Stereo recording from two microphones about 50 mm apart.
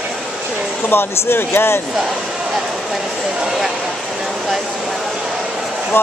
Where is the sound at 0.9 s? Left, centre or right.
Left.